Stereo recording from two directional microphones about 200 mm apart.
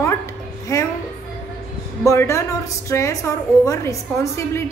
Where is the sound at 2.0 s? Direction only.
15° left (ahead or behind).